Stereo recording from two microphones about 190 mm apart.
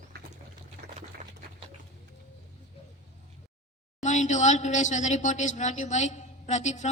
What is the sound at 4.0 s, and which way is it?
A woman's voice, 40° left (ahead or behind).